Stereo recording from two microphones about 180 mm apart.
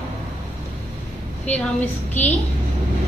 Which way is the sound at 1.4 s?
10° left (ahead or behind).